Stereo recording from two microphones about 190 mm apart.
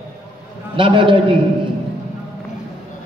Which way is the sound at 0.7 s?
25° right (ahead or behind).